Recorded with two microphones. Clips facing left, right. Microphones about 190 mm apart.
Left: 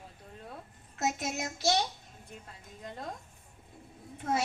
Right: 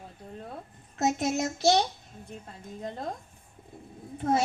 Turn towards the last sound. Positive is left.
turn(degrees=-40)  # may be behind; listen again after turning